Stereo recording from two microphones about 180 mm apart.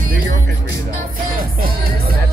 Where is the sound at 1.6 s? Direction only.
55° right (ahead or behind).